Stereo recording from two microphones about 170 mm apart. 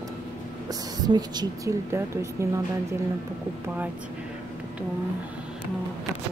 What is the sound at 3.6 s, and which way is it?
Speech, 10° right (ahead or behind).